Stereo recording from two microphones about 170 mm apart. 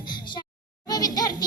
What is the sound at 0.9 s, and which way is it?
Music, 25° left (ahead or behind).